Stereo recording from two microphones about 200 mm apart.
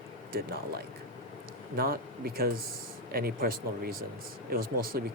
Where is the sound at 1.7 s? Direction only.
50° right (ahead or behind).